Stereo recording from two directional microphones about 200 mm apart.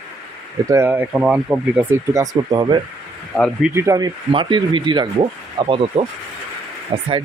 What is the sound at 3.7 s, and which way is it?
Speech, 15° right (ahead or behind).